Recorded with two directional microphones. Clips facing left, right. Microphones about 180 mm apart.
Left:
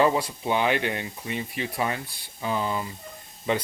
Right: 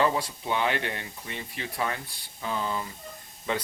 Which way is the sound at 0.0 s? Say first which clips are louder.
Left 4 dB; 15° left (ahead or behind).